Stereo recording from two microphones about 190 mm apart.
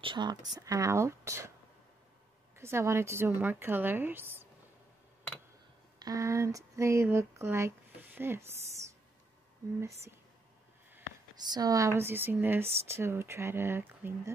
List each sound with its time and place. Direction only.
0.0 s a woman's voice: 25° right (ahead or behind)
2.5 s a woman's voice: 15° right (ahead or behind)
5.9 s speech: 20° right (ahead or behind)
9.8 s a woman's voice: 15° right (ahead or behind)
11.4 s a woman's voice: 20° right (ahead or behind)